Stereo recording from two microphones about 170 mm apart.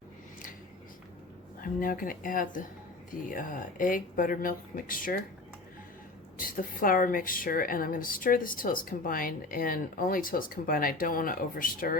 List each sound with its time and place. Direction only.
1.6 s a woman's voice: 55° left (ahead or behind)
6.3 s a woman's voice: 55° left (ahead or behind)